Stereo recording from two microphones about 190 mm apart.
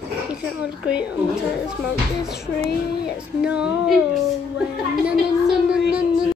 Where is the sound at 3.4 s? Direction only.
5° right (ahead or behind).